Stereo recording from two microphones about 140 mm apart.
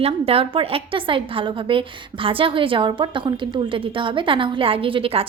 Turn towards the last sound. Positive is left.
turn(degrees=-40)  # may be behind; listen again after turning